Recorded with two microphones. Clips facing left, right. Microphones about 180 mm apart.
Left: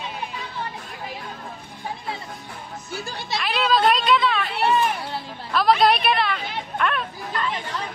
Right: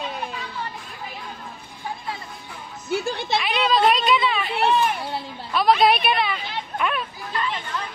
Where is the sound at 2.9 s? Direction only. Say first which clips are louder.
Right 9 dB; 60° right (ahead or behind).